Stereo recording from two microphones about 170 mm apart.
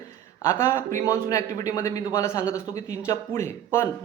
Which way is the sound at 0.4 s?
15° left (ahead or behind).